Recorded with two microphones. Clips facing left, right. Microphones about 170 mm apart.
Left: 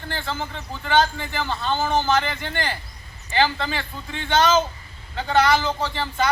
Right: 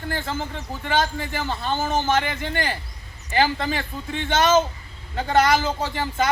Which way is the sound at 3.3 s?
45° right (ahead or behind).